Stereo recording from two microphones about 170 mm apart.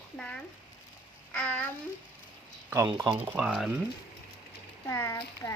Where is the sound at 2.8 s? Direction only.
25° right (ahead or behind).